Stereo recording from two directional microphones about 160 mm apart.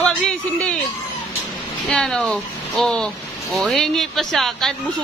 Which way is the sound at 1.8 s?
5° left (ahead or behind).